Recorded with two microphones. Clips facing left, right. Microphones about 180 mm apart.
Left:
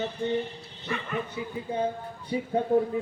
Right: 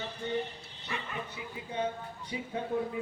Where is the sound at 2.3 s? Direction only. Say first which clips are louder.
Left 9 dB; 40° left (ahead or behind).